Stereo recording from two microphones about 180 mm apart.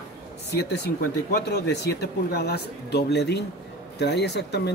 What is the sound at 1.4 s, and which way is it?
Speech, 65° left (ahead or behind).